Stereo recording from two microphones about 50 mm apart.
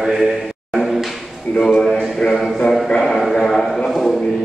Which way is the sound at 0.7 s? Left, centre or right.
Centre.